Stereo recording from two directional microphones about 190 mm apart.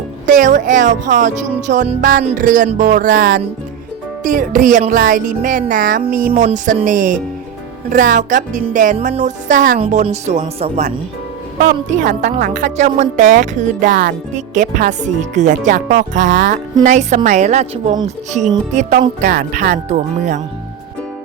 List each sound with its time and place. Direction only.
0.3 s speech: 40° right (ahead or behind)
4.2 s speech: 45° right (ahead or behind)
19.2 s speech: 60° right (ahead or behind)
19.7 s speech: 40° right (ahead or behind)